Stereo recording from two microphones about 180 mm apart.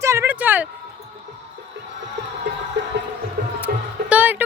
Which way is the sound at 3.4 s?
55° right (ahead or behind).